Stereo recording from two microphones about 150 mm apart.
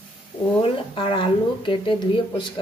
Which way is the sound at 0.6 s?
35° left (ahead or behind).